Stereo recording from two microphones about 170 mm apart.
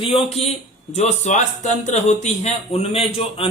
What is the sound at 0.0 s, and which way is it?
Speech, 35° left (ahead or behind).